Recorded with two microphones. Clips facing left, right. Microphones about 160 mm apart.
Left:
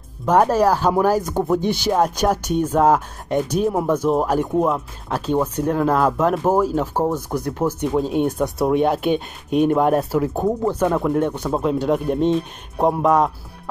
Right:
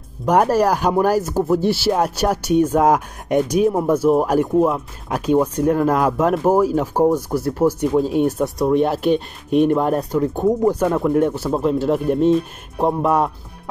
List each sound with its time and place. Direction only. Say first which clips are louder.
0.3 s speech: even; 10° right (ahead or behind)
10.6 s speech: right 2 dB; 10° right (ahead or behind)